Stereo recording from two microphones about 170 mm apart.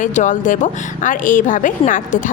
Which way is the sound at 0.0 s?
45° left (ahead or behind).